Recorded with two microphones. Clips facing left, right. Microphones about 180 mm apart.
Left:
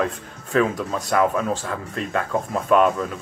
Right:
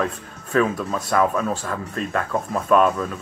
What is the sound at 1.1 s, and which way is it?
Speech, 20° left (ahead or behind).